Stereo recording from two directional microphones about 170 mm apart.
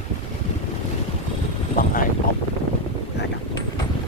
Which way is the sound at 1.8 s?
55° left (ahead or behind).